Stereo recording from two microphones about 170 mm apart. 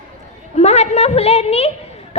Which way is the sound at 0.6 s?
40° left (ahead or behind).